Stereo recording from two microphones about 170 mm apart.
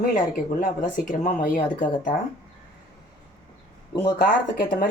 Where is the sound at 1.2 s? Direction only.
55° left (ahead or behind).